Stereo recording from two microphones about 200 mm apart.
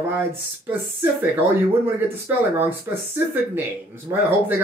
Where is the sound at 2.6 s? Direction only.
10° right (ahead or behind).